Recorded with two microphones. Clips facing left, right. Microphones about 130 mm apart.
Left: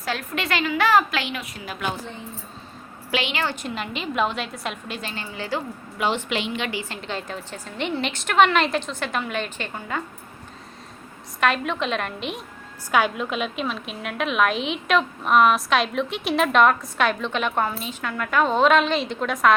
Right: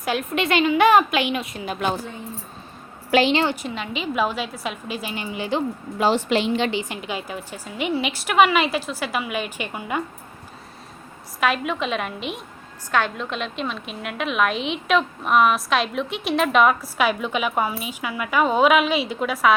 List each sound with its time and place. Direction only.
0.0 s a woman's voice: 20° right (ahead or behind)
3.1 s a woman's voice: 40° right (ahead or behind)
3.5 s a woman's voice: centre (ahead or behind); by 5.6 s 20° right (ahead or behind)
6.0 s a woman's voice: 35° right (ahead or behind); by 10.0 s 10° right (ahead or behind)
11.3 s a woman's voice: 5° right (ahead or behind)